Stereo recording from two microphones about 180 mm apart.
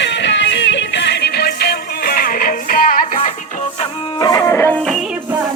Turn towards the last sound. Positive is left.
turn(degrees=10)  # may be behind; listen again after turning